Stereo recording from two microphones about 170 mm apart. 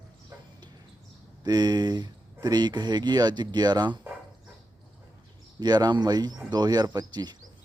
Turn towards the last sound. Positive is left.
turn(degrees=-25)  # may be behind; listen again after turning